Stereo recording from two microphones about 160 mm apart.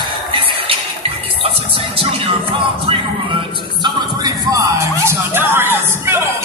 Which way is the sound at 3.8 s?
25° right (ahead or behind).